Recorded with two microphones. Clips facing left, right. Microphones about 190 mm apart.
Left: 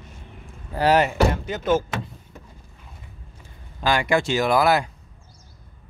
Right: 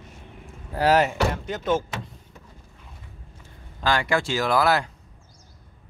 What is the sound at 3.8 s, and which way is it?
Speech, 15° left (ahead or behind).